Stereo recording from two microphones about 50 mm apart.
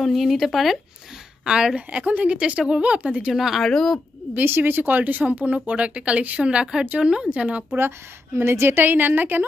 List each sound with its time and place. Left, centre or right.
0.0 s speech: centre
1.4 s speech: centre
1.8 s speech: right
3.3 s speech: centre
3.6 s speech: centre
4.4 s speech: right
8.4 s a woman's voice: right